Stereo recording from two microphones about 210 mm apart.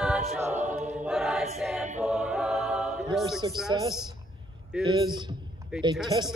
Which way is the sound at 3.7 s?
20° right (ahead or behind).